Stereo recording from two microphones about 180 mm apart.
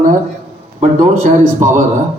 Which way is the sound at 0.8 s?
45° right (ahead or behind).